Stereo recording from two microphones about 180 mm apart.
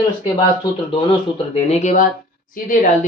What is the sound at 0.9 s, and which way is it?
Speech, 30° left (ahead or behind).